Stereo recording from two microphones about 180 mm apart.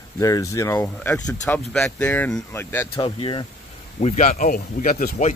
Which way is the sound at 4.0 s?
45° left (ahead or behind).